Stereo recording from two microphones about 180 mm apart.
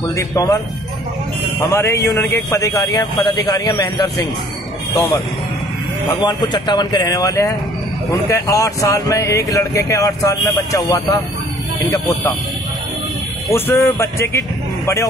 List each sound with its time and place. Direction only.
0.1 s a man's voice: 20° left (ahead or behind)
1.7 s a man's voice: 15° left (ahead or behind)
6.2 s a man's voice: 25° left (ahead or behind)
13.5 s speech: 15° left (ahead or behind)